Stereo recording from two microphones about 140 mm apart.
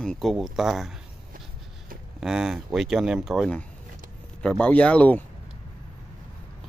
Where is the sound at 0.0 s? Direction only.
5° left (ahead or behind).